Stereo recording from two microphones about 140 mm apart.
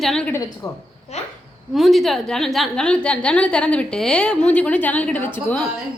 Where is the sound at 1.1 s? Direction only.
50° left (ahead or behind).